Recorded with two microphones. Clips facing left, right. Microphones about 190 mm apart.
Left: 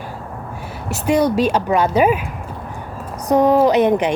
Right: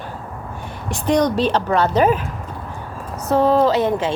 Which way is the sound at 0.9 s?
5° left (ahead or behind).